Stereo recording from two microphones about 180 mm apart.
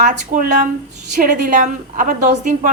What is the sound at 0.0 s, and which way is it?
A woman's voice, 45° right (ahead or behind).